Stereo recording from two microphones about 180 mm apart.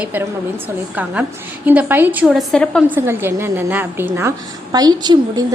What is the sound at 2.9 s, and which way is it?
A woman's voice, 10° right (ahead or behind).